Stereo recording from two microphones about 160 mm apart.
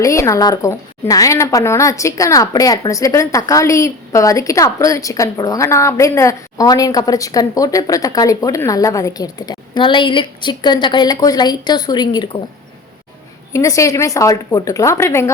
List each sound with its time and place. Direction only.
0.0 s a woman's voice: 20° left (ahead or behind)
13.5 s a woman's voice: 20° left (ahead or behind)